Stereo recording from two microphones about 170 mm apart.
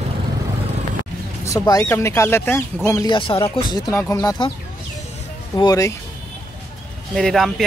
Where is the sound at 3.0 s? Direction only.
30° left (ahead or behind).